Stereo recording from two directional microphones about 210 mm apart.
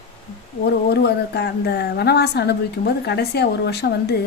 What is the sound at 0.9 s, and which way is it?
A woman's voice, 50° left (ahead or behind).